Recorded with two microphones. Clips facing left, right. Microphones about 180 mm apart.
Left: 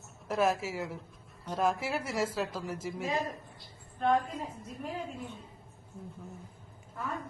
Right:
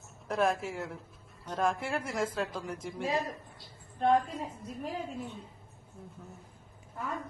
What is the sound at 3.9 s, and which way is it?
Speech, 35° right (ahead or behind).